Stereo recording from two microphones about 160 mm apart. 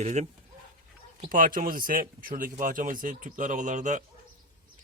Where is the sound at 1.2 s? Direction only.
60° right (ahead or behind).